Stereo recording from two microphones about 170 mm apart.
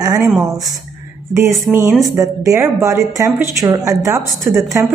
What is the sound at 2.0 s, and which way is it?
Speech, 20° right (ahead or behind).